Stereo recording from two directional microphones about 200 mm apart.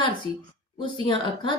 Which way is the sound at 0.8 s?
25° left (ahead or behind).